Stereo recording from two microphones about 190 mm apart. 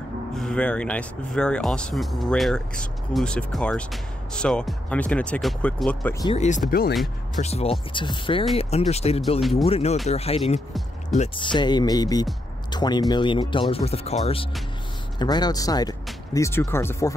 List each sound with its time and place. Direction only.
0.4 s speech: 5° left (ahead or behind)
6.3 s speech: 35° left (ahead or behind)
9.4 s speech: centre (ahead or behind)
9.7 s speech: 30° left (ahead or behind); by 17.1 s 10° left (ahead or behind)